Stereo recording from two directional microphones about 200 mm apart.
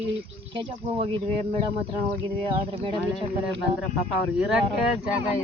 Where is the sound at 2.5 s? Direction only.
25° right (ahead or behind).